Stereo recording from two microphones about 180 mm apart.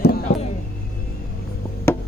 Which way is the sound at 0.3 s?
75° left (ahead or behind).